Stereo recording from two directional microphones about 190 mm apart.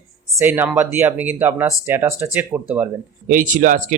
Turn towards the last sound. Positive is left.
turn(degrees=-45)  # may be behind; listen again after turning